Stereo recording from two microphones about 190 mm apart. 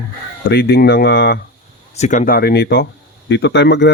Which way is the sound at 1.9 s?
40° left (ahead or behind).